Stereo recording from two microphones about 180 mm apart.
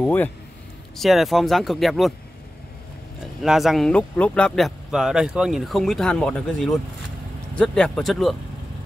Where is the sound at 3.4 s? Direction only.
Centre (ahead or behind).